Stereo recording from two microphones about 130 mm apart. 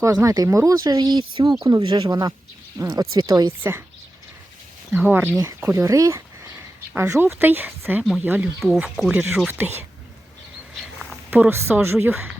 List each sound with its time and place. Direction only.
0.0 s speech: 25° right (ahead or behind)
3.6 s speech: 20° right (ahead or behind)
4.9 s speech: 15° right (ahead or behind)
5.4 s speech: 25° right (ahead or behind)
8.6 s speech: centre (ahead or behind)
11.3 s speech: 15° right (ahead or behind)